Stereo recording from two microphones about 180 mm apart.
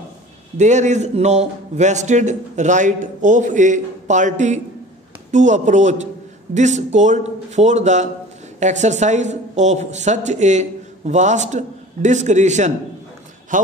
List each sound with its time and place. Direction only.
0.6 s speech: 40° right (ahead or behind)